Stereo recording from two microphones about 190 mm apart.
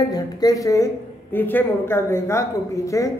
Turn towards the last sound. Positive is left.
turn(degrees=15)  # may be behind; listen again after turning